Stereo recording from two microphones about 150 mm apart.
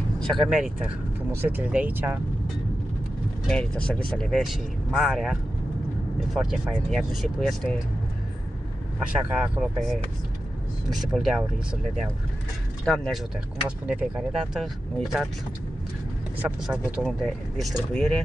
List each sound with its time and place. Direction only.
0.2 s speech: centre (ahead or behind)
3.4 s speech: 10° left (ahead or behind)
9.4 s speech: centre (ahead or behind)
12.8 s speech: 5° left (ahead or behind)
13.7 s speech: 5° right (ahead or behind)
16.3 s speech: 10° right (ahead or behind)
17.2 s speech: 5° left (ahead or behind)